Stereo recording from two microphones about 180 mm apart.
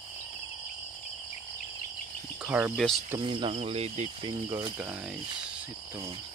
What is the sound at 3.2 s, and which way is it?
Speech, 30° right (ahead or behind).